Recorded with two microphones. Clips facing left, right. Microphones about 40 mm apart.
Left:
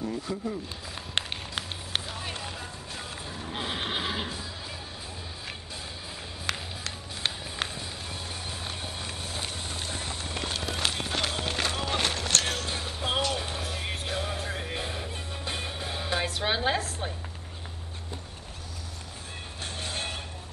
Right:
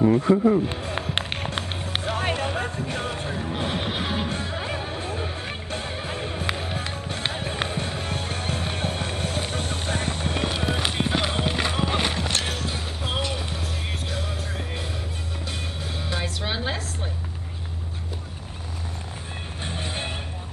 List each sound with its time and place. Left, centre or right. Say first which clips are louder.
0.0 s speech: right 14 dB; right
2.0 s music: right 11 dB; right
3.7 s music: right 4 dB; centre
4.3 s music: right 9 dB; right
9.5 s clip-clop: right 8 dB; right; by 13.2 s centre
13.4 s music: right 2 dB; centre
19.6 s music: right 3 dB; right